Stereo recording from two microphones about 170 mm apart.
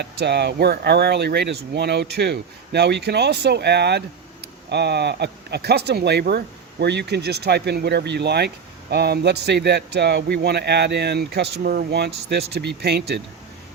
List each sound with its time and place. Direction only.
0.0 s speech: 80° right